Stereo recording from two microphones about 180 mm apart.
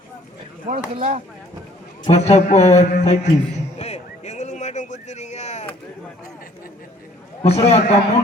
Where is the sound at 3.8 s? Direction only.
40° left (ahead or behind).